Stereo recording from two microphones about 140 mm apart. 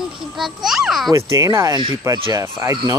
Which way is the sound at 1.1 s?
20° right (ahead or behind).